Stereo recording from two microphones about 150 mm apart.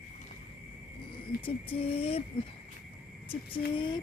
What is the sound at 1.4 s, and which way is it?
Speech, 40° left (ahead or behind).